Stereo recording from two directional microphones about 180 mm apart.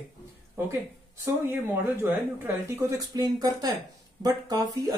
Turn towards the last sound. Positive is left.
turn(degrees=-20)  # may be behind; listen again after turning